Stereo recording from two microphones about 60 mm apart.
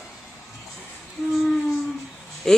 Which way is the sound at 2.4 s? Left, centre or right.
Centre.